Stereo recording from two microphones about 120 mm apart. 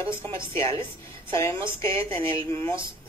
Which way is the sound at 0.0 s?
50° right (ahead or behind).